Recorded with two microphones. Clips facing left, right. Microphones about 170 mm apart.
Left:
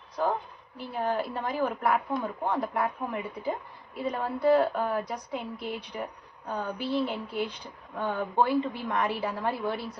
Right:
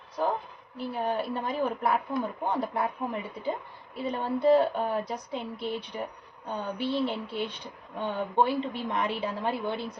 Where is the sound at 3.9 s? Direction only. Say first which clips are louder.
Right 1 dB; 25° right (ahead or behind).